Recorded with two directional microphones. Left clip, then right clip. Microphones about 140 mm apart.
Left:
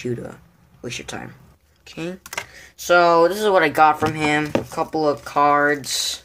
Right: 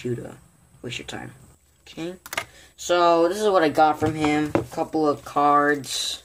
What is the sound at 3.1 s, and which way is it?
Speech, 5° right (ahead or behind).